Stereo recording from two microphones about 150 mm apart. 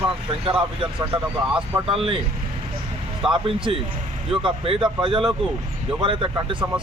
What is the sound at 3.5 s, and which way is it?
Speech, 35° right (ahead or behind).